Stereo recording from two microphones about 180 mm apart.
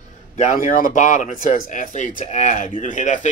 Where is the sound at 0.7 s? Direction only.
45° left (ahead or behind).